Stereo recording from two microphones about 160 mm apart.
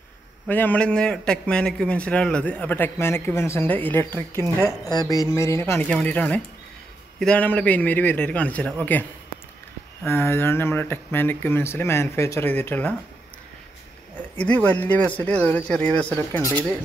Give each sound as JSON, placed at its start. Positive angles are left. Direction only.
{"t": 0.5, "sound": "a man's voice", "side_deg": 10}
{"t": 10.0, "sound": "a man's voice", "side_deg": 15}
{"t": 14.3, "sound": "a man's voice", "side_deg": 10}